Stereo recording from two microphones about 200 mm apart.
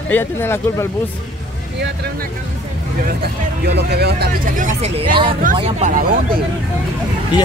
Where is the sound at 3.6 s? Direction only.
55° right (ahead or behind).